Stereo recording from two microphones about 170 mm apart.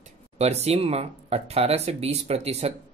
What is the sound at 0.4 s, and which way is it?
Speech, 40° right (ahead or behind).